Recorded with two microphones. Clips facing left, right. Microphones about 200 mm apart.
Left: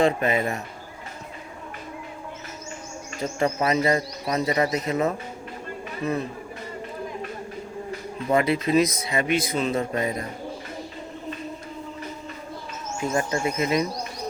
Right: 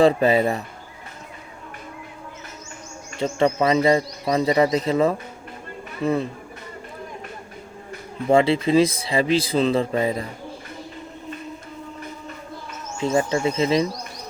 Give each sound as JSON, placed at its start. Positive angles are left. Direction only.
{"t": 0.0, "sound": "speech", "side_deg": -35}
{"t": 3.2, "sound": "speech", "side_deg": -30}
{"t": 8.3, "sound": "speech", "side_deg": -30}
{"t": 13.0, "sound": "speech", "side_deg": -25}